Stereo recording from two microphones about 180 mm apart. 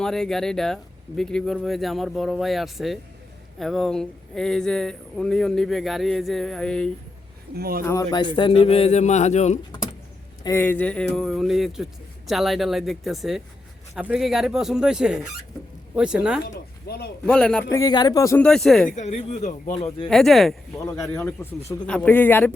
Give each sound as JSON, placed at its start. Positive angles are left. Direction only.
{"t": 0.0, "sound": "speech", "side_deg": 5}
{"t": 7.5, "sound": "speech", "side_deg": -60}
{"t": 7.9, "sound": "speech", "side_deg": 20}
{"t": 10.4, "sound": "speech", "side_deg": 15}
{"t": 16.4, "sound": "speech", "side_deg": 60}
{"t": 17.2, "sound": "a man's voice", "side_deg": 5}
{"t": 18.4, "sound": "speech", "side_deg": 5}
{"t": 18.9, "sound": "speech", "side_deg": 40}
{"t": 19.7, "sound": "speech", "side_deg": 30}
{"t": 20.1, "sound": "speech", "side_deg": 0}
{"t": 20.7, "sound": "a man's voice", "side_deg": 20}